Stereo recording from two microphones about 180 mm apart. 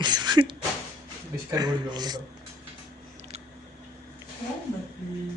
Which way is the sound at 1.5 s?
25° right (ahead or behind).